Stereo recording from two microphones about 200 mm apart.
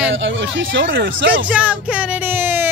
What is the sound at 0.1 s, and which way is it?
Speech, 70° right (ahead or behind).